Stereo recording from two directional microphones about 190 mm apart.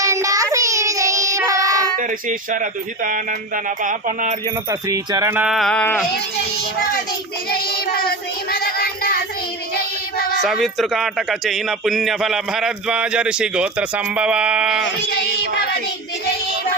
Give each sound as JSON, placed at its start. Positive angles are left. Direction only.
{"t": 0.0, "sound": "child singing", "side_deg": -15}
{"t": 2.0, "sound": "speech", "side_deg": -45}
{"t": 4.7, "sound": "speech", "side_deg": -15}
{"t": 7.5, "sound": "child singing", "side_deg": 55}
{"t": 10.4, "sound": "speech", "side_deg": 0}